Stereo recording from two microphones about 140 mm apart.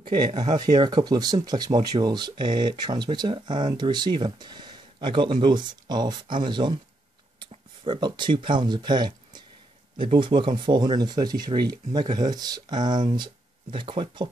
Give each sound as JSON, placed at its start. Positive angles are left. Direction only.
{"t": 0.0, "sound": "speech", "side_deg": -30}